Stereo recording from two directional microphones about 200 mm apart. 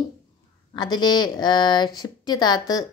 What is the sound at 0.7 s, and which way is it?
A woman's voice, 20° left (ahead or behind).